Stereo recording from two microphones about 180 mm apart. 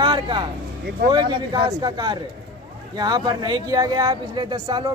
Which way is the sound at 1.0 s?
25° right (ahead or behind).